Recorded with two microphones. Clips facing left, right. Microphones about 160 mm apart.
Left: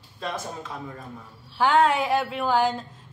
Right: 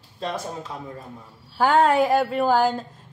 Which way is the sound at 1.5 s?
45° right (ahead or behind).